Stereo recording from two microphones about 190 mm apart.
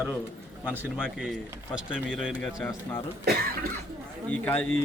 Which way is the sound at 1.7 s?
Centre (ahead or behind).